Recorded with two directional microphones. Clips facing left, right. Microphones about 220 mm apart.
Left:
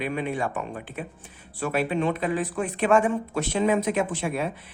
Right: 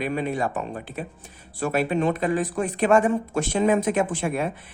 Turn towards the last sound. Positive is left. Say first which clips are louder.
# right 2 dB
turn(degrees=-50)  # may be behind; listen again after turning